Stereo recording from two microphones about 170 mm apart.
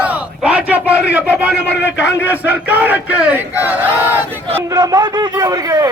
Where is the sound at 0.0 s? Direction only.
10° right (ahead or behind).